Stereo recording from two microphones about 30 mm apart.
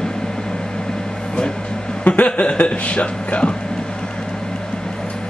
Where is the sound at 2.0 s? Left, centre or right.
Left.